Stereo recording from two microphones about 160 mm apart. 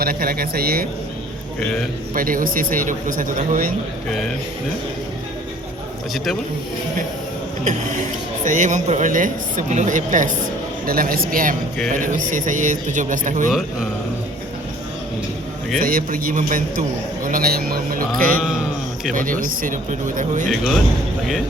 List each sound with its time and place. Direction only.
0.0 s speech: 70° right (ahead or behind)
1.5 s speech: 5° left (ahead or behind)
2.1 s speech: 60° right (ahead or behind)
7.6 s speech: 50° right (ahead or behind)
10.8 s speech: 65° right (ahead or behind)
13.5 s speech: 5° right (ahead or behind)
15.8 s speech: 60° right (ahead or behind)